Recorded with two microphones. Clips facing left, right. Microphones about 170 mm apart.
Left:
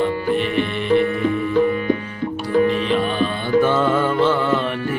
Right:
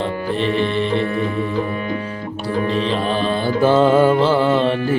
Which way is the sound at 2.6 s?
35° right (ahead or behind).